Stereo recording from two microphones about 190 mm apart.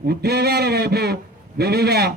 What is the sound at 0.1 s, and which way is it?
A man's voice, 55° right (ahead or behind).